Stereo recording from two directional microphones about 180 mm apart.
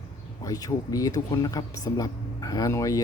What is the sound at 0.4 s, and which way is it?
Speech, 20° left (ahead or behind).